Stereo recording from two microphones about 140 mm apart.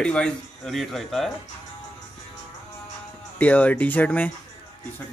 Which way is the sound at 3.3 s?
10° left (ahead or behind).